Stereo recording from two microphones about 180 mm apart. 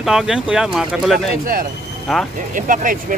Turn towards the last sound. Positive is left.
turn(degrees=-50)  # may be behind; listen again after turning